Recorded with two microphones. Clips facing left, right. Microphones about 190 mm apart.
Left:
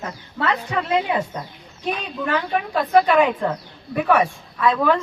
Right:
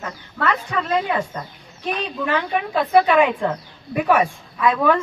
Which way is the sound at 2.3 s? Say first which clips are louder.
Even; 10° right (ahead or behind).